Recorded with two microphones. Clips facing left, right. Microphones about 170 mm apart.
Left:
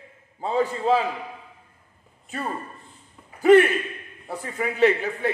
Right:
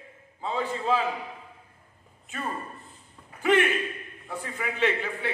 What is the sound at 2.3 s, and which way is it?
A man's voice, 35° left (ahead or behind).